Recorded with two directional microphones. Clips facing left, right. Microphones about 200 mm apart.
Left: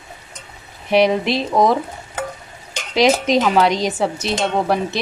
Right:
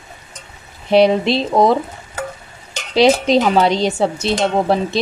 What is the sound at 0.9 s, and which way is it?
Speech, 30° right (ahead or behind).